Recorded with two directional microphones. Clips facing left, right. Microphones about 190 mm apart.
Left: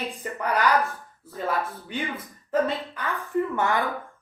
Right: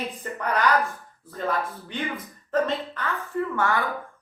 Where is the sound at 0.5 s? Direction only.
Centre (ahead or behind).